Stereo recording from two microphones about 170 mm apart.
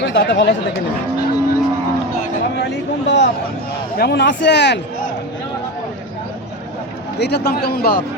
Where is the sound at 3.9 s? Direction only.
75° left (ahead or behind); by 4.8 s 90° left.